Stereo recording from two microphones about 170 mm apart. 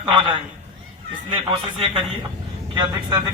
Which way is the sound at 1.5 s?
30° right (ahead or behind).